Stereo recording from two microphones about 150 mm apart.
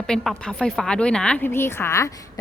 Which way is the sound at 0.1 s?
5° left (ahead or behind).